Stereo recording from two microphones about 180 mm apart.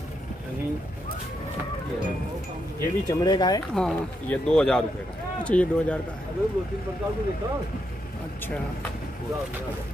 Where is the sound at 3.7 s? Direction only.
5° left (ahead or behind).